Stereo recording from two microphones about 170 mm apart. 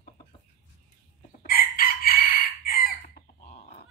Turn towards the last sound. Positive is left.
turn(degrees=60)  # may be behind; listen again after turning